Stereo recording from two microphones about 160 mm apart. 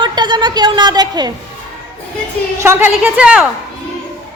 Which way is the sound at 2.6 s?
15° right (ahead or behind).